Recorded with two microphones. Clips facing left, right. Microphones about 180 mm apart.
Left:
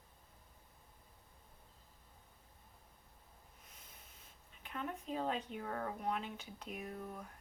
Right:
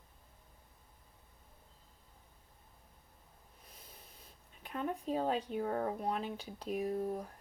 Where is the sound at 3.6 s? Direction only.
35° right (ahead or behind).